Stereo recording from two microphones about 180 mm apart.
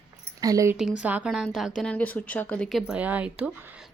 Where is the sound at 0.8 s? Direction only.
5° right (ahead or behind).